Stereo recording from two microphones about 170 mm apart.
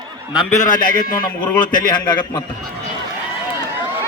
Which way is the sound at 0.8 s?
55° left (ahead or behind).